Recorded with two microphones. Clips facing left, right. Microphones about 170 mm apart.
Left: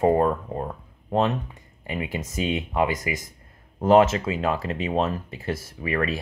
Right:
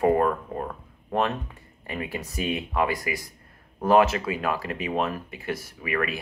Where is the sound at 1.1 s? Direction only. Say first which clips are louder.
Left 3 dB; 20° left (ahead or behind).